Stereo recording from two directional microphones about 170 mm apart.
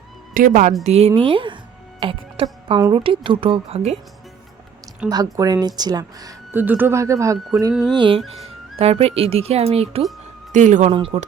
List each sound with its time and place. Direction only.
0.3 s speech: 50° right (ahead or behind)
0.9 s speech: 35° right (ahead or behind)
5.0 s speech: 20° right (ahead or behind)
7.7 s music: centre (ahead or behind)
7.9 s speech: 30° right (ahead or behind)
10.5 s speech: 45° right (ahead or behind)